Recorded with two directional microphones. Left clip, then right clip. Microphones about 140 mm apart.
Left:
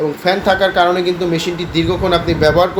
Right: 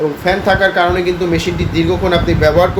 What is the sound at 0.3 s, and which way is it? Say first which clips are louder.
Speech: right 1 dB; 20° left (ahead or behind).